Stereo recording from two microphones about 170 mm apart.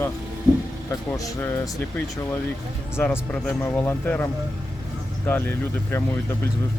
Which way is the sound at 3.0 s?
10° left (ahead or behind).